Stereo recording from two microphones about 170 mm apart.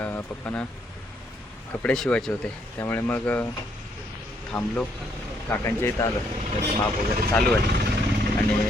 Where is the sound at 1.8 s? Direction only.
5° left (ahead or behind).